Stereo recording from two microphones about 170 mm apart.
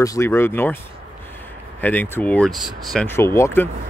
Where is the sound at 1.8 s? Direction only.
10° left (ahead or behind).